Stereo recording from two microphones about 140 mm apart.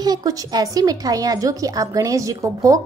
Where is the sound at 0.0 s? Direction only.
25° right (ahead or behind).